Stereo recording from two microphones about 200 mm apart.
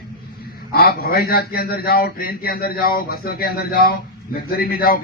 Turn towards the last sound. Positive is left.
turn(degrees=50)  # may be behind; listen again after turning